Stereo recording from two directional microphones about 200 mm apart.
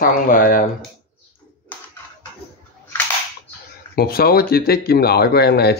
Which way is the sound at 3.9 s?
50° left (ahead or behind).